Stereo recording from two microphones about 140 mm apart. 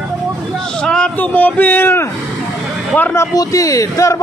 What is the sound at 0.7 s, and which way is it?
A man's voice, 5° left (ahead or behind).